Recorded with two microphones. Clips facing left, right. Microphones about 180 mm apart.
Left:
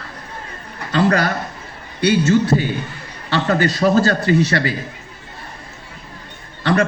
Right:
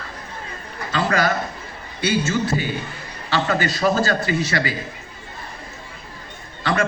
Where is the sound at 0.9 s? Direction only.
35° left (ahead or behind).